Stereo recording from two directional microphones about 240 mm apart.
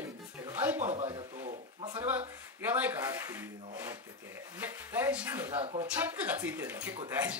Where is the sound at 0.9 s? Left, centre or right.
Right.